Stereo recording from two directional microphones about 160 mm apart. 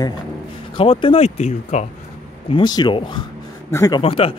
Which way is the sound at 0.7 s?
30° left (ahead or behind).